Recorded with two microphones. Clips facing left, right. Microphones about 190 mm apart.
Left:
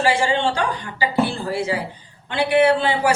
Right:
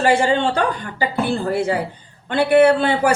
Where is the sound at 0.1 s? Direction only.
50° right (ahead or behind).